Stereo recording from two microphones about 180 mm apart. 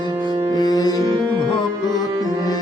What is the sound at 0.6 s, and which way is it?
Music, 20° left (ahead or behind).